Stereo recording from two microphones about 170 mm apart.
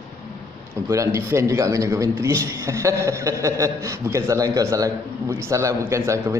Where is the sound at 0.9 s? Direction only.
15° right (ahead or behind).